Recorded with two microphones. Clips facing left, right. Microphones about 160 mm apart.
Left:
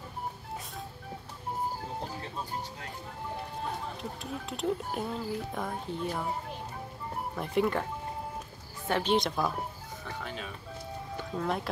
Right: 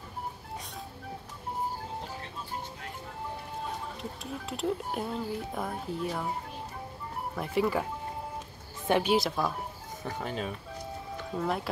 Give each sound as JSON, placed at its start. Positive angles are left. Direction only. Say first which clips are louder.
{"t": 4.0, "sound": "speech", "louder": "even", "side_deg": 0}
{"t": 7.3, "sound": "speech", "louder": "even", "side_deg": 0}
{"t": 8.8, "sound": "speech", "louder": "right 4 dB", "side_deg": -15}
{"t": 9.1, "sound": "speech", "louder": "right 1 dB", "side_deg": 0}
{"t": 10.1, "sound": "speech", "louder": "right 5 dB", "side_deg": -40}
{"t": 11.3, "sound": "speech", "louder": "right 1 dB", "side_deg": 0}